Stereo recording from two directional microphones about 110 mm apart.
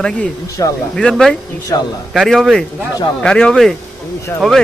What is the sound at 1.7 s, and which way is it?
Speech, 30° left (ahead or behind).